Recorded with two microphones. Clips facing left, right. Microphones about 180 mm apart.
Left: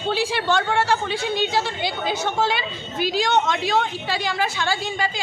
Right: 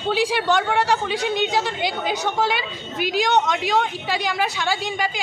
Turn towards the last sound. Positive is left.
turn(degrees=-15)  # may be behind; listen again after turning